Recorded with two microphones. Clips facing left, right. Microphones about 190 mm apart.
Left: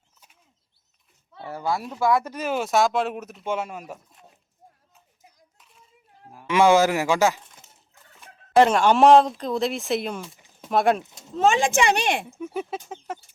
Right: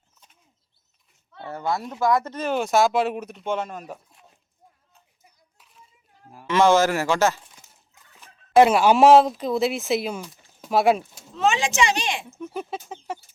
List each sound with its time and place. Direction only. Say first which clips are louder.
1.4 s speech: even; 5° left (ahead or behind)
5.5 s a sound: right 1 dB; centre (ahead or behind)
6.5 s speech: even; 15° left (ahead or behind)
8.2 s speech: right 2 dB; 10° right (ahead or behind)
11.3 s speech: left 2 dB; 50° left (ahead or behind)
12.5 s speech: left 1 dB; centre (ahead or behind)